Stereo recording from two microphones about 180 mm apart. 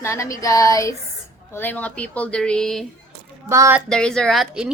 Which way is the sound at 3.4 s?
15° right (ahead or behind).